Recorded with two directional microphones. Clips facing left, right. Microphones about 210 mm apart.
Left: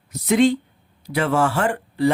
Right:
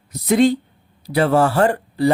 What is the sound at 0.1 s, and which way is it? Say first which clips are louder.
Speech: right 2 dB; 35° right (ahead or behind).